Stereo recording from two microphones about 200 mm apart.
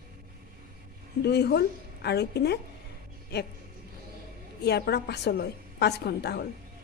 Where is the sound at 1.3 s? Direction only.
55° left (ahead or behind).